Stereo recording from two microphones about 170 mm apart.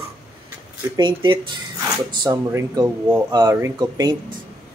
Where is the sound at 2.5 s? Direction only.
15° right (ahead or behind).